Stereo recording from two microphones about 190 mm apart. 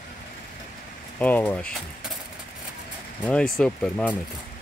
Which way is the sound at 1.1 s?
10° left (ahead or behind).